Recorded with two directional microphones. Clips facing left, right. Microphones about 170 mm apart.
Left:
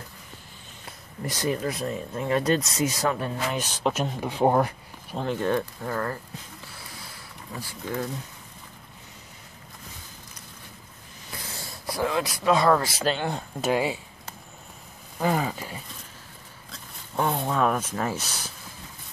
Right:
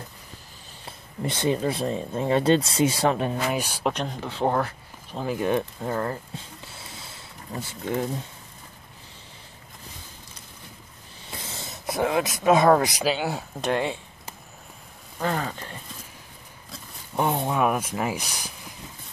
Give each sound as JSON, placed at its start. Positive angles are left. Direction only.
{"t": 0.8, "sound": "speech", "side_deg": -25}
{"t": 3.2, "sound": "speech", "side_deg": -15}
{"t": 3.9, "sound": "speech", "side_deg": 5}
{"t": 5.1, "sound": "speech", "side_deg": -5}
{"t": 5.5, "sound": "speech", "side_deg": -20}
{"t": 11.2, "sound": "a sound", "side_deg": -25}
{"t": 12.4, "sound": "speech", "side_deg": -20}
{"t": 13.1, "sound": "speech", "side_deg": -5}
{"t": 15.1, "sound": "speech", "side_deg": 10}
{"t": 17.1, "sound": "speech", "side_deg": -15}